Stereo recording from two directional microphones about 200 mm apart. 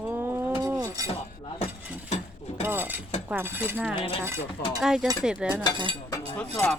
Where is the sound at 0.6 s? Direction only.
15° right (ahead or behind).